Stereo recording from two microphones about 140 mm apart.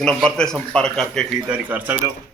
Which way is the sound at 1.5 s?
10° right (ahead or behind).